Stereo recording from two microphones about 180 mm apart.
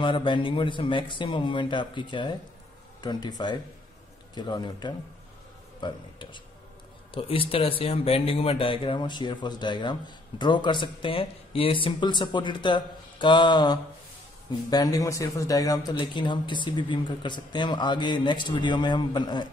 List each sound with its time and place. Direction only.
0.0 s speech: 25° left (ahead or behind)